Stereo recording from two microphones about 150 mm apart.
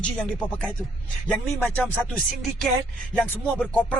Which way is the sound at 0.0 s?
5° left (ahead or behind).